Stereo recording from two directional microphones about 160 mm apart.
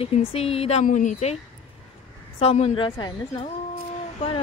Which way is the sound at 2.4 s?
40° left (ahead or behind).